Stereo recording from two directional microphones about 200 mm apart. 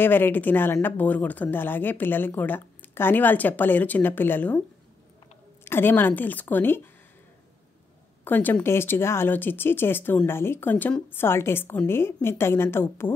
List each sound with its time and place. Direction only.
0.0 s speech: 10° left (ahead or behind)
5.7 s speech: 10° left (ahead or behind)
8.2 s speech: 10° left (ahead or behind)